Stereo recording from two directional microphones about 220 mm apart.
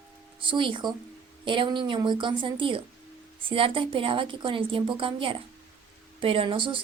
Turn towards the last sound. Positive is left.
turn(degrees=-25)  # may be behind; listen again after turning